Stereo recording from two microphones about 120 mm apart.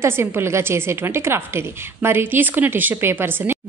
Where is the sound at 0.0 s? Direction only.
20° right (ahead or behind).